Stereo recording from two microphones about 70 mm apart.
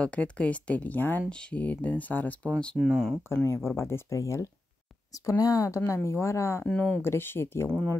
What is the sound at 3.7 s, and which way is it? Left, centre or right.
Speech, left.